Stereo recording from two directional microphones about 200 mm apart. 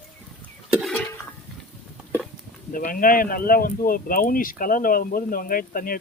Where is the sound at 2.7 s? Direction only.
45° left (ahead or behind).